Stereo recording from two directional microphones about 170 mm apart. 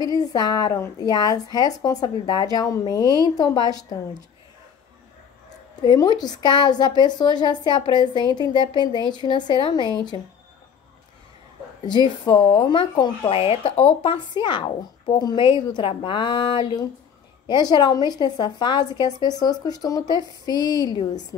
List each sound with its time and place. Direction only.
0.0 s a woman's voice: 20° left (ahead or behind)
5.8 s a woman's voice: 25° left (ahead or behind)
12.3 s a woman's voice: 25° left (ahead or behind)